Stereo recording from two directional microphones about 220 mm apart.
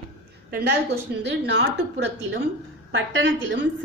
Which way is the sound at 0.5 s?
50° right (ahead or behind).